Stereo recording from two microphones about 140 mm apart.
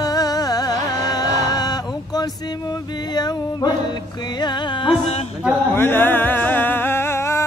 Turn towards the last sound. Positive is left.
turn(degrees=20)  # may be behind; listen again after turning